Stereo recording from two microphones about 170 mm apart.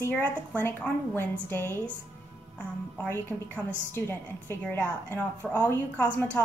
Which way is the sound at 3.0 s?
15° left (ahead or behind).